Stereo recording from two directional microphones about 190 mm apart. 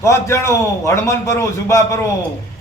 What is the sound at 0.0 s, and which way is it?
A man's voice, 15° left (ahead or behind).